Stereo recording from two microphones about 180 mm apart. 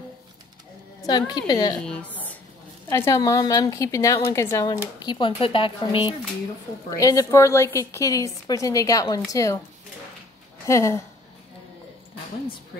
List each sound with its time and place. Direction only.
1.0 s a woman's voice: 20° left (ahead or behind)
1.8 s a woman's voice: 5° left (ahead or behind); by 6.1 s 30° left (ahead or behind)
6.9 s a woman's voice: 20° left (ahead or behind)
10.6 s a woman's voice: 15° left (ahead or behind)